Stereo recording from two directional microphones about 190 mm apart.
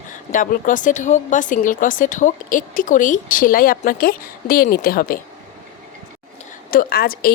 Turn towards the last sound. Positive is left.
turn(degrees=50)  # may be behind; listen again after turning